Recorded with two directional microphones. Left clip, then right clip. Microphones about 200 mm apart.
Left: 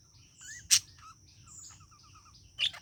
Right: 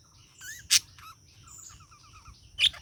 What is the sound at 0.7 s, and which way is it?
Rodents, 40° right (ahead or behind).